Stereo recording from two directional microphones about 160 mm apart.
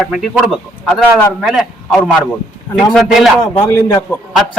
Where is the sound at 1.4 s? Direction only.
Centre (ahead or behind).